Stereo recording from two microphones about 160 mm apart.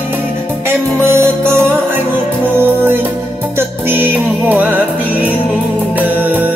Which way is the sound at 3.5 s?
15° right (ahead or behind).